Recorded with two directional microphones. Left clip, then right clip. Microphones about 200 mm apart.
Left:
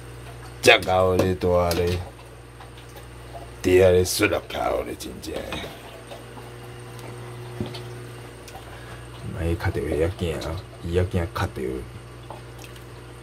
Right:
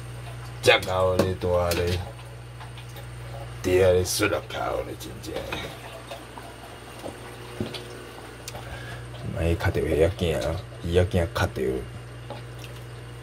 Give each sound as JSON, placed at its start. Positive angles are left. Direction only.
{"t": 0.6, "sound": "speech", "side_deg": 35}
{"t": 3.6, "sound": "speech", "side_deg": 25}
{"t": 9.4, "sound": "speech", "side_deg": 0}